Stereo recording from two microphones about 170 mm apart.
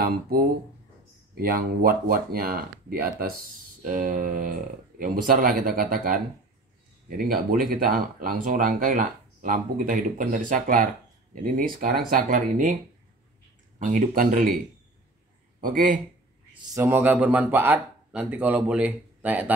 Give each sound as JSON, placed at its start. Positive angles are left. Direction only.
{"t": 0.0, "sound": "speech", "side_deg": -60}
{"t": 13.7, "sound": "speech", "side_deg": -50}
{"t": 15.6, "sound": "speech", "side_deg": -50}
{"t": 16.7, "sound": "speech", "side_deg": -10}